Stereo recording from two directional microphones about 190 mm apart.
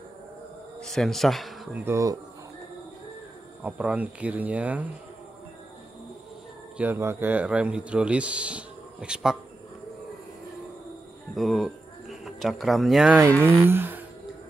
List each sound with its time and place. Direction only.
0.7 s speech: centre (ahead or behind)
1.9 s a man's voice: 15° right (ahead or behind)
3.6 s a man's voice: 5° right (ahead or behind)
6.8 s a man's voice: 10° right (ahead or behind)
11.3 s speech: centre (ahead or behind)
13.7 s a sound: 10° right (ahead or behind)